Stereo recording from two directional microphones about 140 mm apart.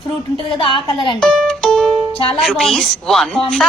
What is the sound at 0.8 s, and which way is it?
Speech, 35° left (ahead or behind).